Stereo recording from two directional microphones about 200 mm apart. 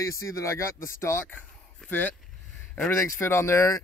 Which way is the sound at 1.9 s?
10° left (ahead or behind).